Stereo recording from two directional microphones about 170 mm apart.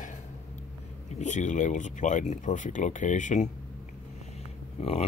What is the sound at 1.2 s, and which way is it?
Speech, 45° left (ahead or behind).